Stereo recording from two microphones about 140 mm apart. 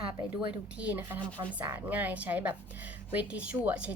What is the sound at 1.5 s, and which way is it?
A woman's voice, 15° right (ahead or behind).